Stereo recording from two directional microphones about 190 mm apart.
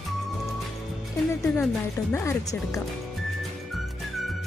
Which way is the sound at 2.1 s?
15° left (ahead or behind).